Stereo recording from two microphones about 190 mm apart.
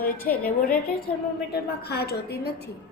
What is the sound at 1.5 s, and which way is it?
A woman's voice, 55° left (ahead or behind).